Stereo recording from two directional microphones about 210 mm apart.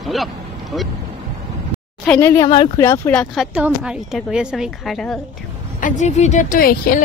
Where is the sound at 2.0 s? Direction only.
10° left (ahead or behind).